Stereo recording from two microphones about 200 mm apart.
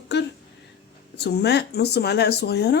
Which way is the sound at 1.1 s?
55° left (ahead or behind).